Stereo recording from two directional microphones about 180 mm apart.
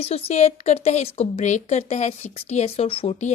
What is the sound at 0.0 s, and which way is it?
Speech, 35° left (ahead or behind).